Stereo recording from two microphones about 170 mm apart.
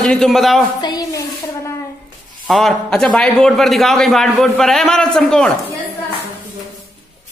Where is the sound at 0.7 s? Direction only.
25° left (ahead or behind).